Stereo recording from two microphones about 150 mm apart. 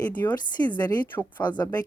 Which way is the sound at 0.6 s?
30° left (ahead or behind).